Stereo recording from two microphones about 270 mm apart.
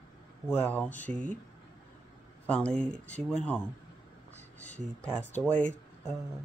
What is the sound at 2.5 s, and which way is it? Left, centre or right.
Speech, centre.